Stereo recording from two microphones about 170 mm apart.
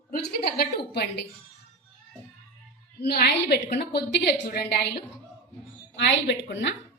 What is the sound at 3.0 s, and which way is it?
A woman's voice, 65° left (ahead or behind).